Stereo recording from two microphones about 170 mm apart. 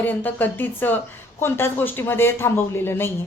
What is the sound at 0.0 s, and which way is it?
Speech, 10° left (ahead or behind).